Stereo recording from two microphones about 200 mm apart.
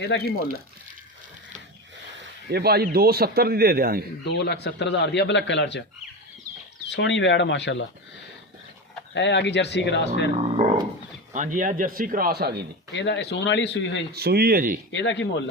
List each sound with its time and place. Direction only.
0.1 s speech: 60° left (ahead or behind)
2.5 s speech: 55° right (ahead or behind)
4.3 s speech: 60° left (ahead or behind)
6.9 s speech: 65° left (ahead or behind)
9.1 s speech: 60° left (ahead or behind)
10.3 s a sound: 30° right (ahead or behind)
11.3 s speech: 40° right (ahead or behind)
12.9 s speech: 65° left (ahead or behind)
14.1 s speech: 50° right (ahead or behind)
14.9 s speech: 65° left (ahead or behind)